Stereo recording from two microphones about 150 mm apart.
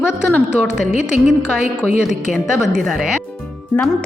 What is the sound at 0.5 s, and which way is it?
A woman's voice, 5° right (ahead or behind).